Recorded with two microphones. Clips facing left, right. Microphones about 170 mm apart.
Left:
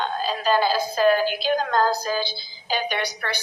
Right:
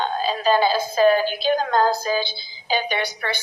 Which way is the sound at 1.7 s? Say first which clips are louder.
Right 2 dB; 25° right (ahead or behind).